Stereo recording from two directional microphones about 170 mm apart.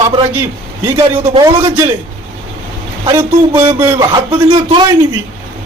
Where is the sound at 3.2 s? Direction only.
15° right (ahead or behind).